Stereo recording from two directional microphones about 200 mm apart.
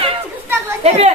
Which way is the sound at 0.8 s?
30° right (ahead or behind).